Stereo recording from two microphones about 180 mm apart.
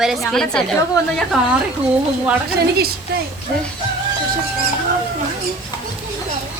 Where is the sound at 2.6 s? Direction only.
60° right (ahead or behind).